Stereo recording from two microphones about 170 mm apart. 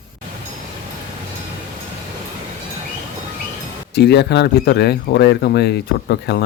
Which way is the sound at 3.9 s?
75° left (ahead or behind).